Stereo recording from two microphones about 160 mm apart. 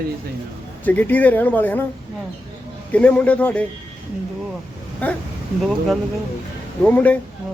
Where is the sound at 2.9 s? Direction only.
10° left (ahead or behind).